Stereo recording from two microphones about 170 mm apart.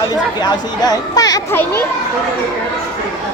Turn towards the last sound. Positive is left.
turn(degrees=20)  # may be behind; listen again after turning